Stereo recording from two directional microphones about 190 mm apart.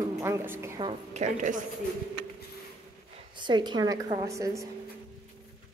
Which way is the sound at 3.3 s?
25° right (ahead or behind).